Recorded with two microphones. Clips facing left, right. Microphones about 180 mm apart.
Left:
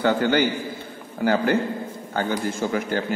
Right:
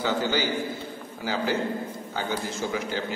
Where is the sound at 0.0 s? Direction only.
60° left (ahead or behind).